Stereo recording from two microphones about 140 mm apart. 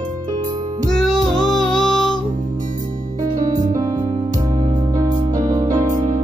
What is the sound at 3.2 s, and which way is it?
Music, 25° right (ahead or behind).